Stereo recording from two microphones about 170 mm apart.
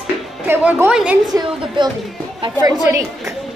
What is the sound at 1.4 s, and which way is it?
A woman's voice, 25° right (ahead or behind).